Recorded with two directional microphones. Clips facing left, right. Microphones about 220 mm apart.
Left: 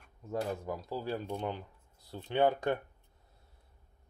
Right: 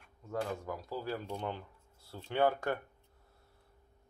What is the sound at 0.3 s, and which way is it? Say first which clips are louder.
Speech: left 2 dB; 20° left (ahead or behind).